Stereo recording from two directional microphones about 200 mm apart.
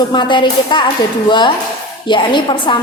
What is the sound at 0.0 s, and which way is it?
A woman's voice, 25° left (ahead or behind).